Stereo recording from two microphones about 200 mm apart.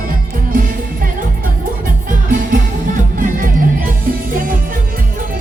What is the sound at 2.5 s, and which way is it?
Music, 40° right (ahead or behind).